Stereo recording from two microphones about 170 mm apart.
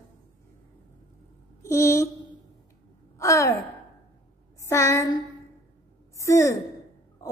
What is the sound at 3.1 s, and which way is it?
Speech, 20° left (ahead or behind).